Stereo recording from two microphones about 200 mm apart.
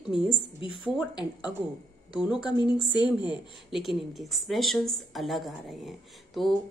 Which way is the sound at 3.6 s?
Centre (ahead or behind).